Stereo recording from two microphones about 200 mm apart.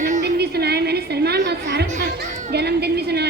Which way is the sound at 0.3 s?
55° right (ahead or behind).